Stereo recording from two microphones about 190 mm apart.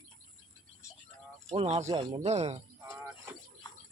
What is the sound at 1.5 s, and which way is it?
Speech, 35° right (ahead or behind).